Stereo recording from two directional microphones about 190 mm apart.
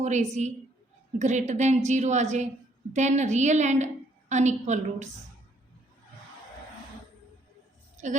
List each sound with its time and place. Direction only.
0.0 s a woman's voice: 35° right (ahead or behind)
7.9 s speech: 40° right (ahead or behind)